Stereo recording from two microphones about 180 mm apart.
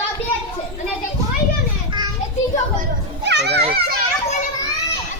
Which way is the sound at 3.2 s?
70° right (ahead or behind).